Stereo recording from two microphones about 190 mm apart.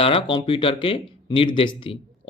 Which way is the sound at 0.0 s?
30° left (ahead or behind).